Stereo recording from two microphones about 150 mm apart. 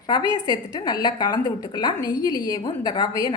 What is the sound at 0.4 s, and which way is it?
A woman's voice, 25° left (ahead or behind).